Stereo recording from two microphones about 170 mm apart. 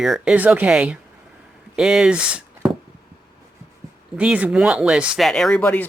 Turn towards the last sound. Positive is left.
turn(degrees=10)  # may be behind; listen again after turning